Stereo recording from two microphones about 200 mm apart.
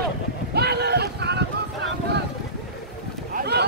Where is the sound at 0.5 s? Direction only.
55° right (ahead or behind).